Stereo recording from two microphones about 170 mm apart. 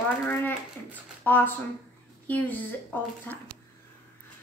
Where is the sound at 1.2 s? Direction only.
10° left (ahead or behind).